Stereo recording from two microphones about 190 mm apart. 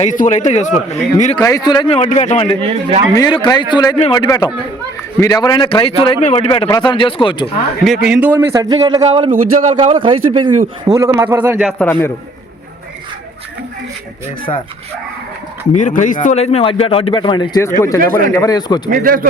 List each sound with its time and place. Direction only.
0.0 s a man's voice: 40° left (ahead or behind)
1.4 s a man's voice: 15° left (ahead or behind); by 2.6 s 35° left (ahead or behind)
2.6 s speech: 30° right (ahead or behind)
3.2 s a man's voice: 25° left (ahead or behind)
8.0 s a man's voice: 5° right (ahead or behind)
9.3 s speech: 45° right (ahead or behind)
9.8 s a man's voice: 25° right (ahead or behind)
10.9 s a man's voice: 15° right (ahead or behind)
11.8 s a man's voice: 10° left (ahead or behind)
14.5 s a man's voice: 30° left (ahead or behind)
15.7 s a man's voice: 40° left (ahead or behind); by 17.7 s 20° left (ahead or behind)
18.0 s speech: 45° right (ahead or behind)
18.3 s a man's voice: 20° left (ahead or behind)
18.9 s speech: 50° right (ahead or behind)